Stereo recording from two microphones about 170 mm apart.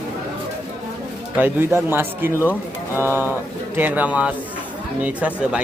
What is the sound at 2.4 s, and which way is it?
Speech, 15° left (ahead or behind).